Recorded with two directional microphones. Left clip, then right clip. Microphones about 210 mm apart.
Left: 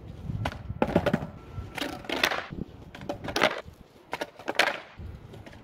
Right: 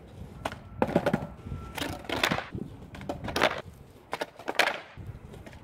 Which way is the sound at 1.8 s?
5° right (ahead or behind).